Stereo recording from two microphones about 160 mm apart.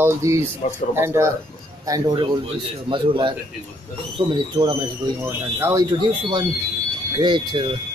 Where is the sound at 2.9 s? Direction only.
30° right (ahead or behind).